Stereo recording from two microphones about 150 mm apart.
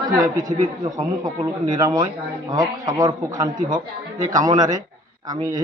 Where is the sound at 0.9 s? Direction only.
25° right (ahead or behind).